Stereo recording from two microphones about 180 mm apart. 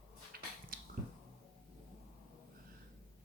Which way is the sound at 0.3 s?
60° right (ahead or behind).